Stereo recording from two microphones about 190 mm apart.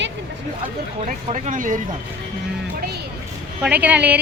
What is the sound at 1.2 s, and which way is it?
Speech, 40° right (ahead or behind).